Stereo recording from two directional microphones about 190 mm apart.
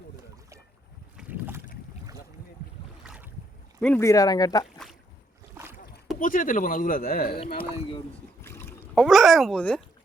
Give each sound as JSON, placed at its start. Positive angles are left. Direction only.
{"t": 1.1, "sound": "boat", "side_deg": -10}
{"t": 3.0, "sound": "boat", "side_deg": -5}
{"t": 3.8, "sound": "speech", "side_deg": 10}
{"t": 6.1, "sound": "speech", "side_deg": 45}
{"t": 7.3, "sound": "speech", "side_deg": 30}
{"t": 7.9, "sound": "boat", "side_deg": 15}
{"t": 9.0, "sound": "speech", "side_deg": 0}